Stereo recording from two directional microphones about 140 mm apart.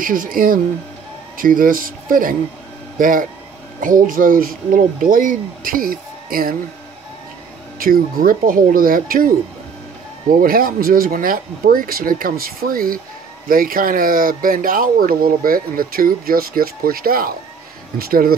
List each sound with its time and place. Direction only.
0.0 s speech: 80° right
7.8 s speech: 90° right
10.4 s speech: 90° right